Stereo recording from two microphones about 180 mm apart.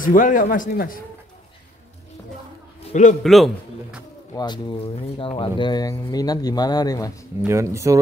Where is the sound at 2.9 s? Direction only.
40° left (ahead or behind).